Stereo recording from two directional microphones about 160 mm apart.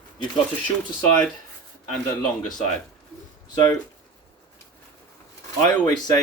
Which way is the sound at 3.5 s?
25° left (ahead or behind).